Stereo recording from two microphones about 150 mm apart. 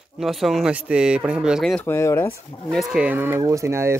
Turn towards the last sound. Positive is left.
turn(degrees=-15)  # may be behind; listen again after turning